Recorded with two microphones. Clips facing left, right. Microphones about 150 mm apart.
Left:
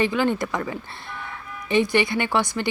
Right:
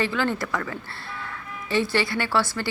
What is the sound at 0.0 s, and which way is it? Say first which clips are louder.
A woman's voice: left 3 dB; 20° left (ahead or behind).